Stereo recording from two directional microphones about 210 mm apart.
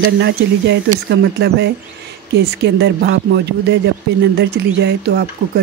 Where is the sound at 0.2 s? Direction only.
55° right (ahead or behind).